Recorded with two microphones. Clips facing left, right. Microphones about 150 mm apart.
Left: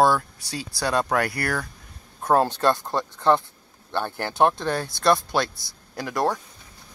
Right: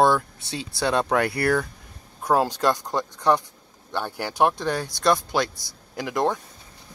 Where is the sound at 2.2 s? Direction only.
10° right (ahead or behind).